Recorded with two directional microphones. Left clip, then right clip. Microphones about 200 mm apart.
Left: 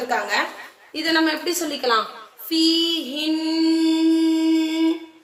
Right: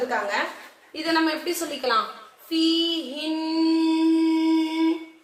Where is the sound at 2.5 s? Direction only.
45° left (ahead or behind).